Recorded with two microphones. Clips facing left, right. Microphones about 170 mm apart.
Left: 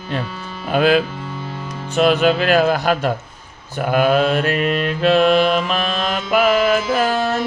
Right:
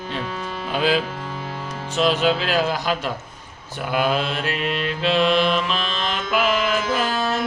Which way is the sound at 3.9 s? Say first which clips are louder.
Left 6 dB; 50° left (ahead or behind).